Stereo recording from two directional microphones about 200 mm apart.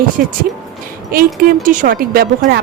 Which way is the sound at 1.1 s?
45° right (ahead or behind).